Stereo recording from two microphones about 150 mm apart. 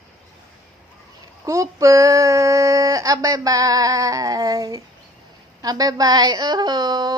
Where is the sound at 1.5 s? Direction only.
20° right (ahead or behind).